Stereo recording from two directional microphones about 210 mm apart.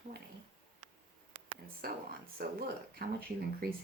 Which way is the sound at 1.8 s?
45° right (ahead or behind).